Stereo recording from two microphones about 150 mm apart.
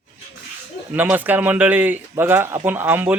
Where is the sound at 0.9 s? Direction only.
10° right (ahead or behind).